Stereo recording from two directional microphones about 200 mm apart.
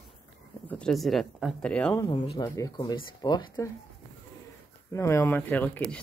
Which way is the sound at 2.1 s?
25° left (ahead or behind).